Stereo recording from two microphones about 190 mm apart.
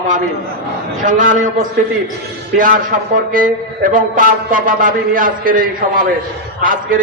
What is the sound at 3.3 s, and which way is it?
A man's voice, 45° right (ahead or behind).